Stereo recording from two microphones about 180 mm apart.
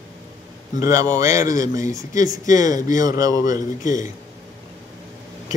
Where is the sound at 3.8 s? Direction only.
45° left (ahead or behind).